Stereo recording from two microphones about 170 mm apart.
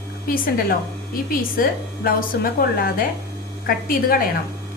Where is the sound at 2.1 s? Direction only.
60° left (ahead or behind).